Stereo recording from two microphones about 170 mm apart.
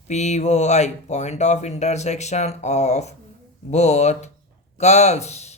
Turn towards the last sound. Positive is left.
turn(degrees=40)  # may be behind; listen again after turning